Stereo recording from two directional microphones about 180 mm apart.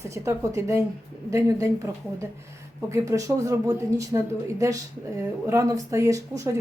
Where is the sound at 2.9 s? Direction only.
15° right (ahead or behind).